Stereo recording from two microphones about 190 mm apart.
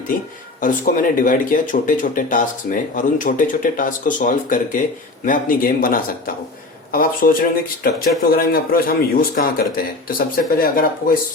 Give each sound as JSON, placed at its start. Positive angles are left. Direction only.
{"t": 0.6, "sound": "speech", "side_deg": 45}